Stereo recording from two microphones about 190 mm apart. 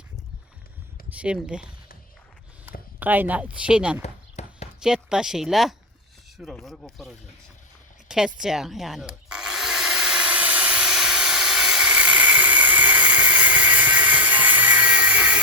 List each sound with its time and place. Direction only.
1.1 s speech: 5° right (ahead or behind)
3.0 s speech: 10° right (ahead or behind)
4.0 s horse: 35° left (ahead or behind)
4.8 s speech: 5° right (ahead or behind)
8.0 s wood: 5° right (ahead or behind)